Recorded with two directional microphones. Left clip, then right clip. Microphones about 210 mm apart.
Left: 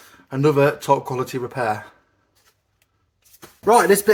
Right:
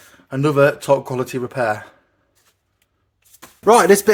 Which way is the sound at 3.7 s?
35° right (ahead or behind).